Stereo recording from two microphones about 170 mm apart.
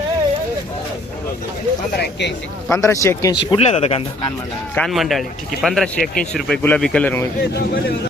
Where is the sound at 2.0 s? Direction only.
90° left.